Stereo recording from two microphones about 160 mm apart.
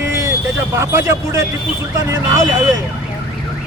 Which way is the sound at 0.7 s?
15° right (ahead or behind).